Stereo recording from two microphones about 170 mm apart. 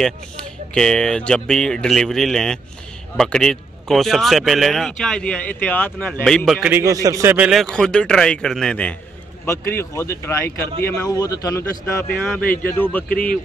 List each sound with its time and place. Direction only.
0.7 s a man's voice: 5° left (ahead or behind)
6.8 s a man's voice: 20° right (ahead or behind)
7.3 s a man's voice: 5° right (ahead or behind)